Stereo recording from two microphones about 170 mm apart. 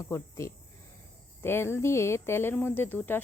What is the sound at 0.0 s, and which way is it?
Speech, 15° left (ahead or behind).